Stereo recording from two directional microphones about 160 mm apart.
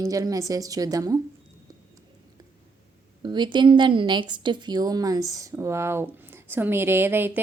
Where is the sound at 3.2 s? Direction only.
30° right (ahead or behind).